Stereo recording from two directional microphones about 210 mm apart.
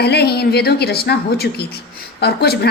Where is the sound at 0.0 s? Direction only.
50° left (ahead or behind).